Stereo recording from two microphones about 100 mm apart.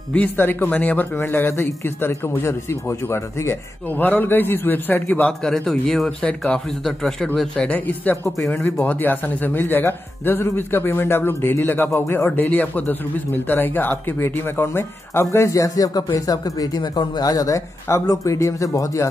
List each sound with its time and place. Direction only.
0.1 s speech: 20° left (ahead or behind)
5.4 s speech: 5° left (ahead or behind); by 19.0 s 30° left (ahead or behind)